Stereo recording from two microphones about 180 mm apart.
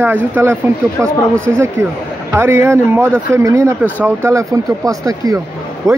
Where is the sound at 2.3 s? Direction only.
15° right (ahead or behind).